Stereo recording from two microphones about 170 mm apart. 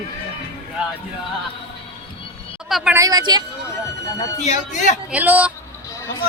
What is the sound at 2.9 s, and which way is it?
Speech, 20° right (ahead or behind).